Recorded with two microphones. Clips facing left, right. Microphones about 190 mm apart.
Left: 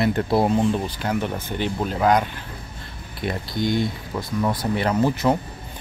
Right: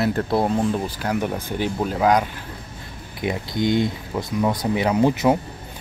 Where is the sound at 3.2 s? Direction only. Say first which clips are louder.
Right 2 dB; 20° right (ahead or behind).